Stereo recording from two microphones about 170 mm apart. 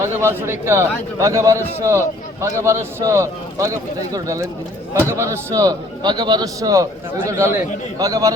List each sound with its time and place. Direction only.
0.0 s a man's voice: 15° right (ahead or behind)